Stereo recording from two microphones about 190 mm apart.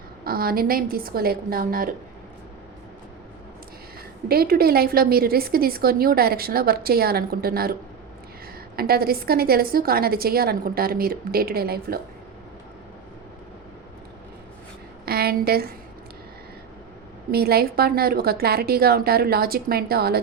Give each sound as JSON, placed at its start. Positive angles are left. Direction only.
{"t": 0.3, "sound": "a woman's voice", "side_deg": -50}
{"t": 4.3, "sound": "a woman's voice", "side_deg": -55}
{"t": 15.0, "sound": "a sound", "side_deg": -55}
{"t": 17.3, "sound": "a woman's voice", "side_deg": -55}